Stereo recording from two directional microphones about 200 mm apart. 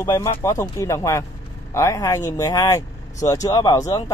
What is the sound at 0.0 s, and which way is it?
Speech, 15° left (ahead or behind).